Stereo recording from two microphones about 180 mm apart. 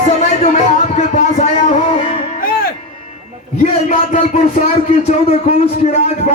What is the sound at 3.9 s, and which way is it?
Music, 45° left (ahead or behind).